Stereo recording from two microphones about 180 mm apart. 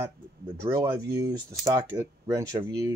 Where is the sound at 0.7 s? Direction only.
20° right (ahead or behind).